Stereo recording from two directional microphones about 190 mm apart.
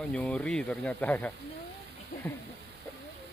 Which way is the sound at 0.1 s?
5° left (ahead or behind).